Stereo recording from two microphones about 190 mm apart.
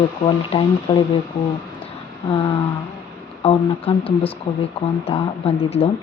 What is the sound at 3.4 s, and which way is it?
Speech, 30° left (ahead or behind).